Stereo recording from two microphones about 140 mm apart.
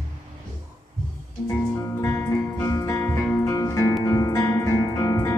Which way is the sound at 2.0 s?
15° left (ahead or behind).